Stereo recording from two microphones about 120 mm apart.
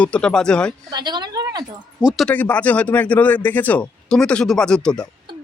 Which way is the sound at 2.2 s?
10° left (ahead or behind).